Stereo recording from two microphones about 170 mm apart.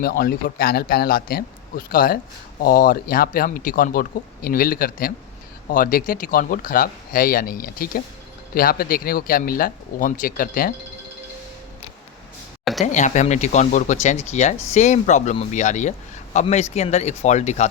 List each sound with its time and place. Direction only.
0.0 s speech: 60° left (ahead or behind)
12.8 s speech: 45° left (ahead or behind)